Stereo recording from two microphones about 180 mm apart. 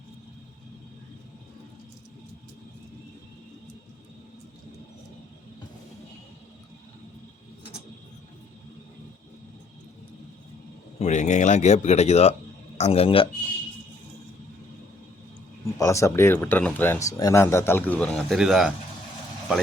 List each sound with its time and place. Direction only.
11.0 s speech: 40° left (ahead or behind)
15.6 s speech: 15° left (ahead or behind); by 18.7 s centre (ahead or behind)